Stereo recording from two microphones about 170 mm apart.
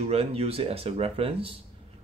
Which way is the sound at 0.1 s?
35° right (ahead or behind).